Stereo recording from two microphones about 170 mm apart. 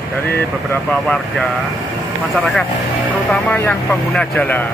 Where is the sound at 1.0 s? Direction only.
Centre (ahead or behind).